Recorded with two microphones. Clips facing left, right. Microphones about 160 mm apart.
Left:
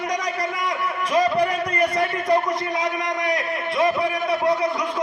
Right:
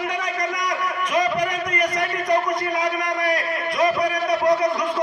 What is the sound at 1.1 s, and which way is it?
Speech, 30° left (ahead or behind).